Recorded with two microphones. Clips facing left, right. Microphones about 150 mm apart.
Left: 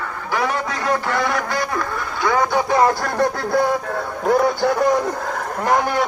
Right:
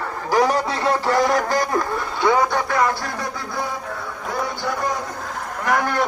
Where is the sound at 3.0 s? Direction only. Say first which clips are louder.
Left 8 dB; 65° left (ahead or behind).